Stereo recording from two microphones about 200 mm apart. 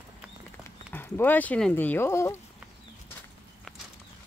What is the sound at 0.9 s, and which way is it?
Speech, 10° left (ahead or behind).